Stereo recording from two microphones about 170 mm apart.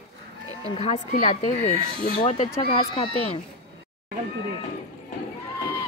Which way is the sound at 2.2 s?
35° left (ahead or behind).